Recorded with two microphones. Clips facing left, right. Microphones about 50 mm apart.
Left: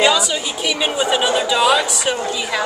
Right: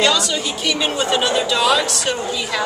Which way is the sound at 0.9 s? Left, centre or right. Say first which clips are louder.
Left 2 dB; centre.